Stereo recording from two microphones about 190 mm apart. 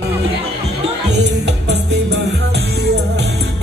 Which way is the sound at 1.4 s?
65° right (ahead or behind).